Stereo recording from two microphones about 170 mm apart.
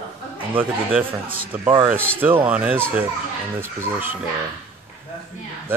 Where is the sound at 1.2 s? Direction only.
55° right (ahead or behind).